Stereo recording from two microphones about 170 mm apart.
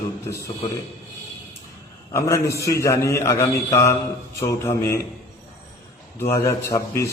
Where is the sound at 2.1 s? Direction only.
15° left (ahead or behind).